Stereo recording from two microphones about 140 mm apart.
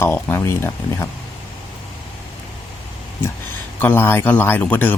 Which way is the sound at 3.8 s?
15° left (ahead or behind).